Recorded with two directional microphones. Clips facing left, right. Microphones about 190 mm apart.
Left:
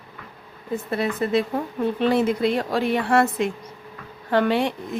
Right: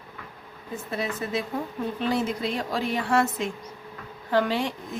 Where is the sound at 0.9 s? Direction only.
60° left (ahead or behind).